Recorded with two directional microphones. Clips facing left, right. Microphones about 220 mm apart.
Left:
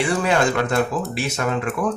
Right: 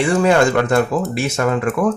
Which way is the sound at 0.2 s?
50° right (ahead or behind).